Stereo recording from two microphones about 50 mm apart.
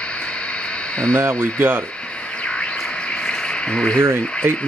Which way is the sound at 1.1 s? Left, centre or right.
Right.